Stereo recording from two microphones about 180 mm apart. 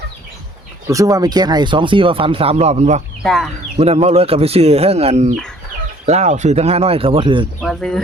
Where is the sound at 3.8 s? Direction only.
35° right (ahead or behind).